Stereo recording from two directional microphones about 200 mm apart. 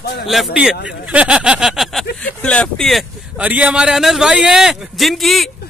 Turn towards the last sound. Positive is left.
turn(degrees=0)  # may be behind; listen again after turning